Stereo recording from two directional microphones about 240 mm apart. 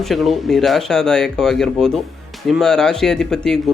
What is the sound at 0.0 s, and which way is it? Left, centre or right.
Speech, centre.